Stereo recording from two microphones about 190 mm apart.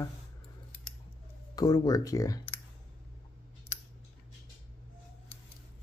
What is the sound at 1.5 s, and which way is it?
Speech, 20° left (ahead or behind).